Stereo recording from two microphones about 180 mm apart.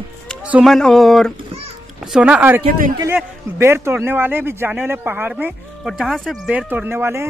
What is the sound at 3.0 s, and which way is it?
Speech, 15° right (ahead or behind).